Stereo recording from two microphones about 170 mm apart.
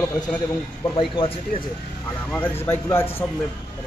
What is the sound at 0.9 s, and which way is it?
Speech, 30° left (ahead or behind).